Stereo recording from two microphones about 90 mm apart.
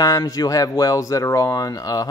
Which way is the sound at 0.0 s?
40° left (ahead or behind).